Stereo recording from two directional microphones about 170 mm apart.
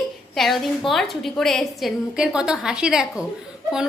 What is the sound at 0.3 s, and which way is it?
A woman's voice, centre (ahead or behind).